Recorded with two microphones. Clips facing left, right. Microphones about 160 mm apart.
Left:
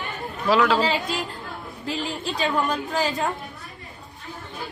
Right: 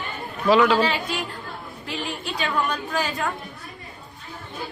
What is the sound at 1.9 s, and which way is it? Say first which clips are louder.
A woman's voice: left 2 dB; 35° left (ahead or behind).